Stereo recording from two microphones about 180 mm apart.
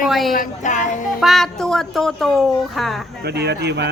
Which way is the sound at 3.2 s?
65° right (ahead or behind).